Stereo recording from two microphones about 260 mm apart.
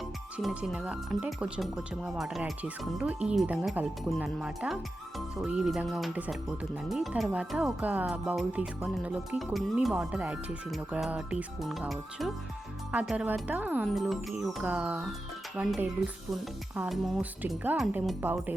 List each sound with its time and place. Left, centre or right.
0.3 s speech: centre